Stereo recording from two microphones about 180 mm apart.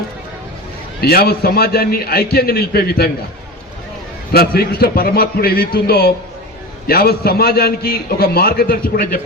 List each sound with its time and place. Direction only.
1.0 s a man's voice: 60° left (ahead or behind)
4.3 s a man's voice: 60° left (ahead or behind)